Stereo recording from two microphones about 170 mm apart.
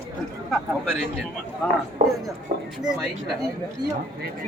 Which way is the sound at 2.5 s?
65° right (ahead or behind).